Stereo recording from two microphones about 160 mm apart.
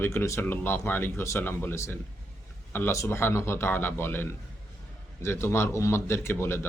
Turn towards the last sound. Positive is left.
turn(degrees=15)  # may be behind; listen again after turning